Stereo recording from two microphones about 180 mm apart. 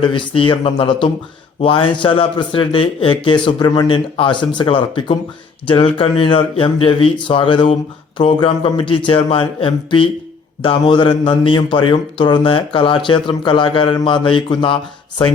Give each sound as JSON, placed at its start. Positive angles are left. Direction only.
{"t": 0.0, "sound": "a man's voice", "side_deg": 25}